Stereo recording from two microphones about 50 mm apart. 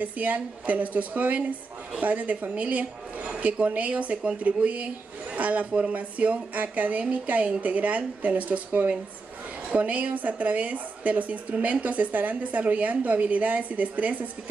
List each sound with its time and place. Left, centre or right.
0.0 s speech: right
5.7 s a woman's voice: right